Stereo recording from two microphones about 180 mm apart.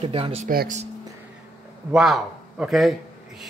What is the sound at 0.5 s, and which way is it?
Speech, 55° right (ahead or behind).